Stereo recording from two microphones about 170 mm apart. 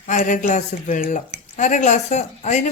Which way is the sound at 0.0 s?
45° left (ahead or behind).